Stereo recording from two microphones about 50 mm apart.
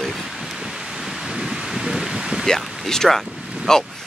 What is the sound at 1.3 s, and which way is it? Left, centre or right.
Wind, centre.